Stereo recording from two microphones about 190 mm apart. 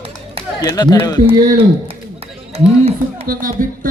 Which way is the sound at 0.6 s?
20° left (ahead or behind).